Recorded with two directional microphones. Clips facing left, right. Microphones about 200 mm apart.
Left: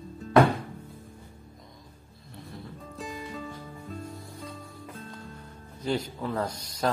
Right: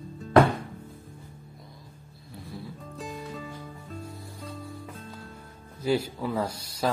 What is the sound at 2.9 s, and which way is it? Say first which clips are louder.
Music: even; centre (ahead or behind).